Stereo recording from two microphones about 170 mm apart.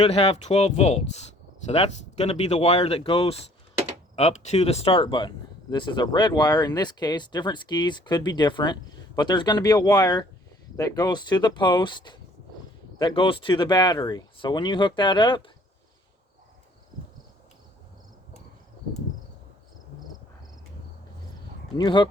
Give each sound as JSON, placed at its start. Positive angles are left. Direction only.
{"t": 0.0, "sound": "speech", "side_deg": 40}
{"t": 21.8, "sound": "speech", "side_deg": 25}